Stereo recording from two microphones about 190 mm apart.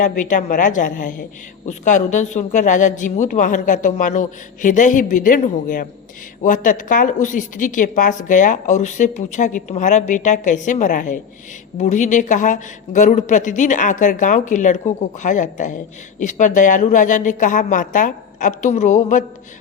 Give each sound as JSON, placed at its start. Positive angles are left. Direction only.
{"t": 0.0, "sound": "a woman's voice", "side_deg": 40}